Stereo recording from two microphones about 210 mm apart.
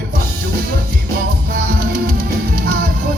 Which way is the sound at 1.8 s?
45° right (ahead or behind).